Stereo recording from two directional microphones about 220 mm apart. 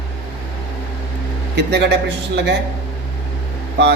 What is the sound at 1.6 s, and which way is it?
Speech, 50° right (ahead or behind).